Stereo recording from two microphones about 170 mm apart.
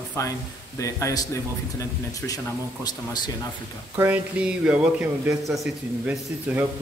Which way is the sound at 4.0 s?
10° right (ahead or behind).